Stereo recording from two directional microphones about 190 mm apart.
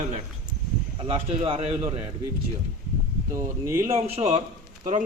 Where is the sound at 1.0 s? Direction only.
30° right (ahead or behind).